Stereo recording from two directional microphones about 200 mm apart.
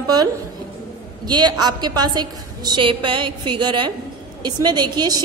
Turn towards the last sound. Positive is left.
turn(degrees=-20)  # may be behind; listen again after turning